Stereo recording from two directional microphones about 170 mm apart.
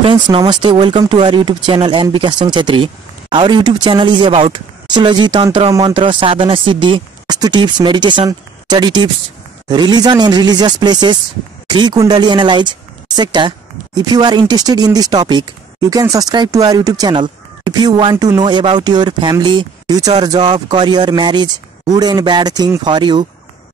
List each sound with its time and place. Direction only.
0.0 s speech: 35° right (ahead or behind)